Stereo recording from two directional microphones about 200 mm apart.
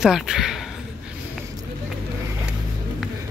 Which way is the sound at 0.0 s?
5° right (ahead or behind).